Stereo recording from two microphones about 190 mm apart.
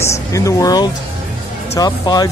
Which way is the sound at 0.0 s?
15° left (ahead or behind).